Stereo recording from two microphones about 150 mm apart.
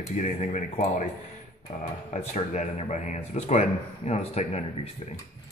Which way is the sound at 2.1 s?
50° left (ahead or behind).